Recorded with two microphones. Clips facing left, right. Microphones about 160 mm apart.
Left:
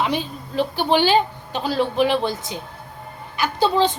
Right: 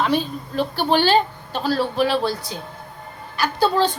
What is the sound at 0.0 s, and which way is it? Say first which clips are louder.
A woman's voice: right 2 dB; 15° left (ahead or behind).